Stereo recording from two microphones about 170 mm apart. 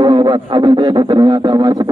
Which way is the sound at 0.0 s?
25° right (ahead or behind).